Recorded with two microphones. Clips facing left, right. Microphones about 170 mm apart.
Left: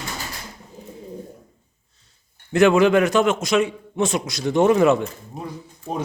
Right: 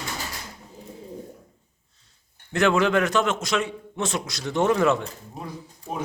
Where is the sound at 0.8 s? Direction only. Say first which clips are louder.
Left 2 dB; 35° right (ahead or behind).